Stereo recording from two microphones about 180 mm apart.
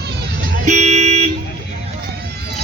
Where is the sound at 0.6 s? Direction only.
40° right (ahead or behind).